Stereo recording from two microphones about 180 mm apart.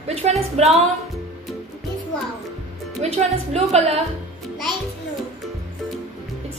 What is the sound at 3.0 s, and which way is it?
Speech, 35° right (ahead or behind).